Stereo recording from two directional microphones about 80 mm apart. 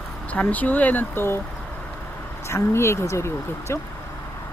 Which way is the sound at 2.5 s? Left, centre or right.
Left.